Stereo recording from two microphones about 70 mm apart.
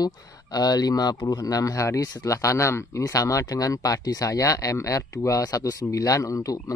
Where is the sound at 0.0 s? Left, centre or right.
Left.